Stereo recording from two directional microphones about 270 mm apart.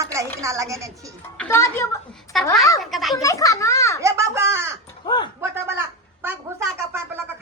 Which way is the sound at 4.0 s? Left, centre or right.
Centre.